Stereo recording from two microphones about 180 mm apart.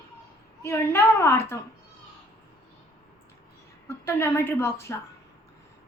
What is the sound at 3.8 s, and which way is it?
A woman's voice, 15° left (ahead or behind).